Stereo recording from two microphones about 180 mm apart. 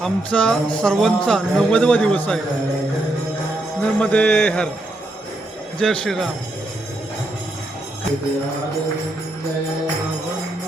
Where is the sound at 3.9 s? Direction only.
10° left (ahead or behind).